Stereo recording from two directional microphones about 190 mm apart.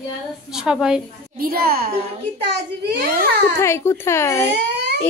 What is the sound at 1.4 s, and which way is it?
A child's voice, 50° right (ahead or behind).